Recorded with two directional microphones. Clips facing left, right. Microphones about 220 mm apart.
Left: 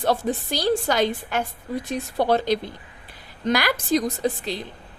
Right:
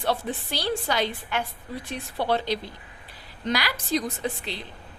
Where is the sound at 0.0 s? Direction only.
40° left (ahead or behind).